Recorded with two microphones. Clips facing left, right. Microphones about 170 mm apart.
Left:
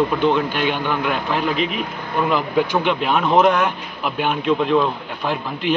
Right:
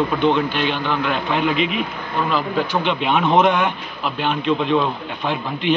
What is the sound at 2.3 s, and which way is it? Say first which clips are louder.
Speech: left 2 dB; 15° left (ahead or behind).